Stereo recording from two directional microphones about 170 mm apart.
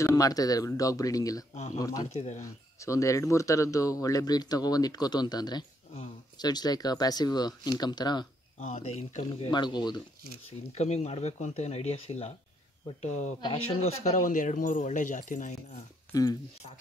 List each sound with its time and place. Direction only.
0.0 s speech: 20° left (ahead or behind)
1.5 s speech: 40° left (ahead or behind)
1.8 s speech: 20° left (ahead or behind)
2.1 s speech: 40° left (ahead or behind)
2.4 s speech: 20° left (ahead or behind)
8.5 s speech: 40° left (ahead or behind); by 10.0 s 25° left (ahead or behind)
10.7 s speech: 40° left (ahead or behind)
16.1 s speech: 20° left (ahead or behind)